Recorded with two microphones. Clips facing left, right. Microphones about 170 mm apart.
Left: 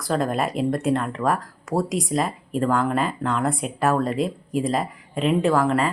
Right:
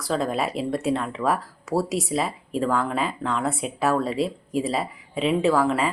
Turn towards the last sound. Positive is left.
turn(degrees=-5)  # may be behind; listen again after turning